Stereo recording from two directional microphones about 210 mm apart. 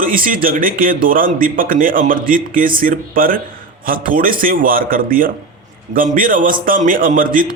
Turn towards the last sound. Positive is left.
turn(degrees=-40)  # may be behind; listen again after turning